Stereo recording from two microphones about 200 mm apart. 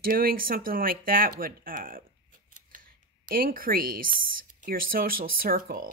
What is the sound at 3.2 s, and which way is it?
Speech, 45° right (ahead or behind).